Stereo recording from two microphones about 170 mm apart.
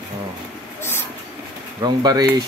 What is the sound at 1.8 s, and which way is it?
Speech, 25° right (ahead or behind).